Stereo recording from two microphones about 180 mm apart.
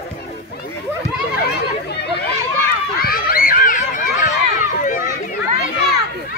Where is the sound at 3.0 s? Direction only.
55° left (ahead or behind).